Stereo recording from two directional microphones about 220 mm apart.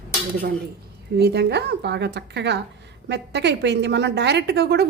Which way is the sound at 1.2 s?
50° right (ahead or behind).